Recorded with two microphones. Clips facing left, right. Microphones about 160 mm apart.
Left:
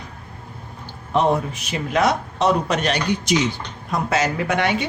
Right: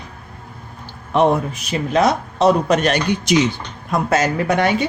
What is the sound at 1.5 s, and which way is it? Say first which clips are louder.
A woman's voice: right 4 dB; 40° right (ahead or behind).